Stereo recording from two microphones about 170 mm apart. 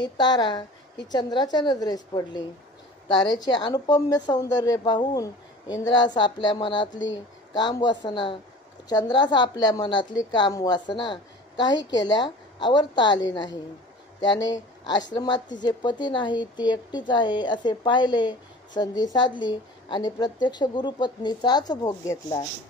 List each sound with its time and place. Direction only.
0.0 s a woman's voice: 25° left (ahead or behind)